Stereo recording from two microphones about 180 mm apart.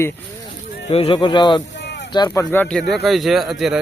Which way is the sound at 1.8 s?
70° left (ahead or behind).